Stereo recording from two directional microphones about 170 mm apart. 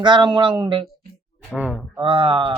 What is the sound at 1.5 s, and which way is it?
Speech, 5° left (ahead or behind).